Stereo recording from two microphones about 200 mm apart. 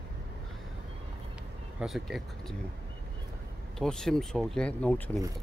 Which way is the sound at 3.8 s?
Centre (ahead or behind).